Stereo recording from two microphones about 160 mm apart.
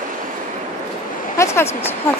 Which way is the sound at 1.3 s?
15° left (ahead or behind).